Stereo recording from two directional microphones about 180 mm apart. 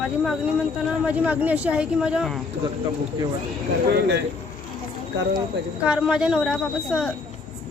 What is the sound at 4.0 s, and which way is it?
Speech, 75° right (ahead or behind).